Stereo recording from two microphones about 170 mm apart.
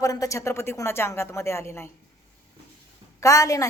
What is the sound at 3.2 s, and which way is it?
Speech, 20° left (ahead or behind).